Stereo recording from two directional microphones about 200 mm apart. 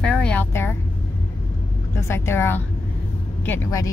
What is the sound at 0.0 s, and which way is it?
Vehicle, 5° left (ahead or behind).